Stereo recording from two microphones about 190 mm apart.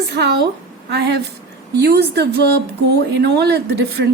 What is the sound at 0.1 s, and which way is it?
Speech, 60° right (ahead or behind).